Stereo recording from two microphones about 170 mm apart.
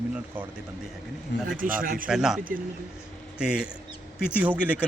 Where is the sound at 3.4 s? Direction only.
5° right (ahead or behind).